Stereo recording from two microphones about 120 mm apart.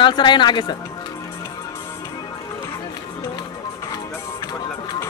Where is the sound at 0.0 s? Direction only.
40° left (ahead or behind).